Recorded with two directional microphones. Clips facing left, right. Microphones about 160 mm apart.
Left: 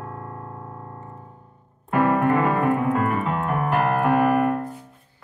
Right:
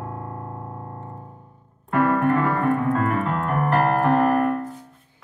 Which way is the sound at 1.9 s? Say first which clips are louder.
Even; 20° left (ahead or behind).